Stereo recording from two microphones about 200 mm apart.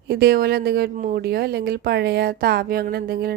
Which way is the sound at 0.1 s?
55° right (ahead or behind).